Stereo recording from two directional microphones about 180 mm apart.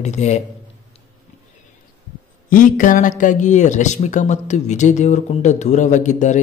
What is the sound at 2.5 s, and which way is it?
Speech, 50° left (ahead or behind).